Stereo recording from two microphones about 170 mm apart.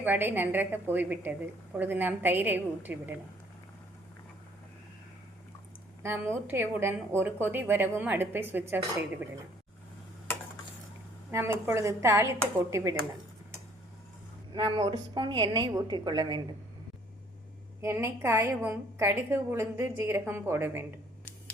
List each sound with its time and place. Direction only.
0.0 s a woman's voice: 10° right (ahead or behind)
6.0 s a woman's voice: 15° right (ahead or behind)
11.3 s a woman's voice: 15° right (ahead or behind)
14.5 s a woman's voice: 25° right (ahead or behind)
17.7 s a woman's voice: 15° right (ahead or behind)